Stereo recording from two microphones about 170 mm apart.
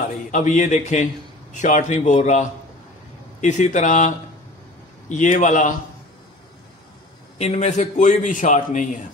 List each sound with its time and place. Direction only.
0.3 s a man's voice: 45° left (ahead or behind)
5.1 s a man's voice: 45° left (ahead or behind)
7.3 s a man's voice: 40° left (ahead or behind)